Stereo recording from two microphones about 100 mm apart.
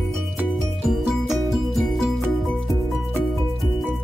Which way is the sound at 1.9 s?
Centre (ahead or behind).